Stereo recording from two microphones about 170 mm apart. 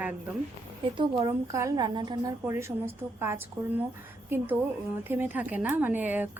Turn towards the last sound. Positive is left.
turn(degrees=-10)  # may be behind; listen again after turning